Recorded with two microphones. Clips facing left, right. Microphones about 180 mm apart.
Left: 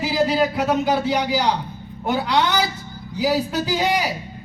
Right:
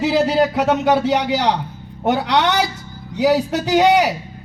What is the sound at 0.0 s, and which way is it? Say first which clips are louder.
A man's voice: right 3 dB; 75° right (ahead or behind).